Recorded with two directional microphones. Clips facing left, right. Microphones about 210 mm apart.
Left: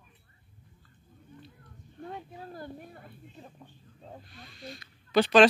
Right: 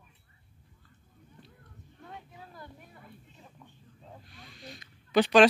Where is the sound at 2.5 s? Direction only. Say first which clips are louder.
Left 8 dB; 35° left (ahead or behind).